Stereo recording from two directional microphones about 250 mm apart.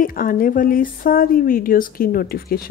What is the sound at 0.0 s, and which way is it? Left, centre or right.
Speech, left.